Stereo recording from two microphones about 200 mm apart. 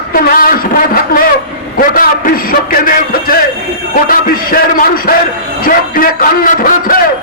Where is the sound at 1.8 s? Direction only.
45° left (ahead or behind).